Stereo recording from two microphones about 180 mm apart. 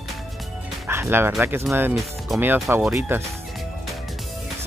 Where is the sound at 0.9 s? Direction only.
10° right (ahead or behind).